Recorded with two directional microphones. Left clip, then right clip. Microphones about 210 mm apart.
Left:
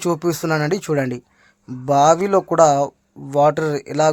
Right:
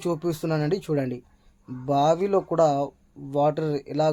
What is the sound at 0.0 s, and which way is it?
Speech, 25° left (ahead or behind).